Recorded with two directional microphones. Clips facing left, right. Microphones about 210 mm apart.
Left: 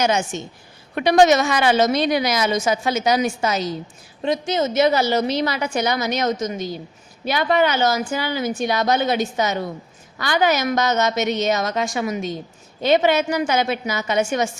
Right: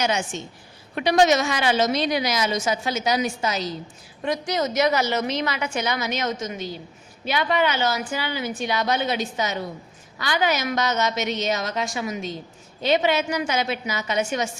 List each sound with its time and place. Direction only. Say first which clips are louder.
0.0 s a woman's voice: left 4 dB; 45° left (ahead or behind)
4.2 s a woman's voice: left 4 dB; 25° left (ahead or behind); by 14.5 s 50° left (ahead or behind)